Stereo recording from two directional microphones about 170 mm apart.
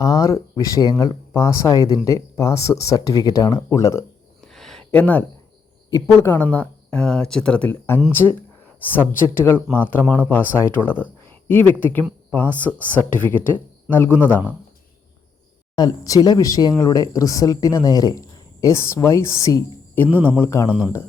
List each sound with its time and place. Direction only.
0.0 s speech: 20° left (ahead or behind)
4.4 s a sound: centre (ahead or behind)
5.9 s speech: 15° left (ahead or behind)
12.6 s speech: 10° right (ahead or behind)
13.1 s speech: 10° left (ahead or behind)
14.1 s speech: 10° right (ahead or behind)
15.7 s speech: 25° left (ahead or behind)
20.7 s speech: 5° right (ahead or behind)